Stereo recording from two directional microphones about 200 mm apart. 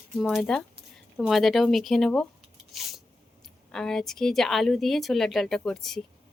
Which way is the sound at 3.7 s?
5° left (ahead or behind).